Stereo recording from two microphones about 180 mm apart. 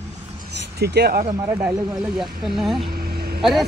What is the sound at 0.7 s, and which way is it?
Speech, 65° right (ahead or behind).